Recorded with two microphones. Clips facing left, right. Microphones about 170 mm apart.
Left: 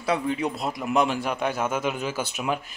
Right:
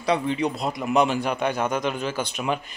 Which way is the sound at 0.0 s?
5° left (ahead or behind).